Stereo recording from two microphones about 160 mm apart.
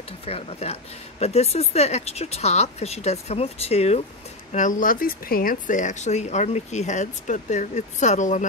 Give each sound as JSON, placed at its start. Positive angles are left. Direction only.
{"t": 0.2, "sound": "speech", "side_deg": 40}
{"t": 4.5, "sound": "speech", "side_deg": 55}